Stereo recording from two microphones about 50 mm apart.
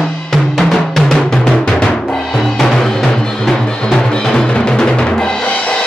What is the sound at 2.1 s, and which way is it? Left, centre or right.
Music, centre.